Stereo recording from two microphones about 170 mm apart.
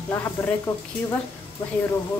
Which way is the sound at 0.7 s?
20° left (ahead or behind).